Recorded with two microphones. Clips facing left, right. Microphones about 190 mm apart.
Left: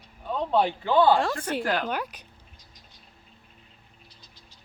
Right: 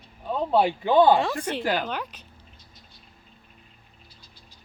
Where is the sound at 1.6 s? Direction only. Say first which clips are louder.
Right 2 dB; centre (ahead or behind).